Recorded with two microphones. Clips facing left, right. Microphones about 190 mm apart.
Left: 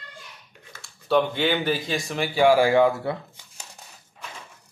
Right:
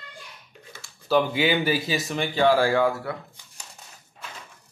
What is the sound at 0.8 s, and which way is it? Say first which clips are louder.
Speech: left 1 dB; centre (ahead or behind).